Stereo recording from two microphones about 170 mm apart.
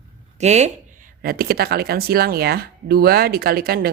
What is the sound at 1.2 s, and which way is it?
Speech, 60° right (ahead or behind).